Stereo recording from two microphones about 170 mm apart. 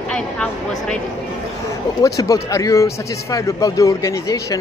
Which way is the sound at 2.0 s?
20° left (ahead or behind).